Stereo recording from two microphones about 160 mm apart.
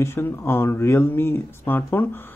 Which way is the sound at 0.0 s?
15° left (ahead or behind).